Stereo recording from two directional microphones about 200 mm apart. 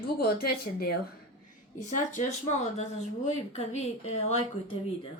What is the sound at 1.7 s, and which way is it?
Speech, 40° left (ahead or behind).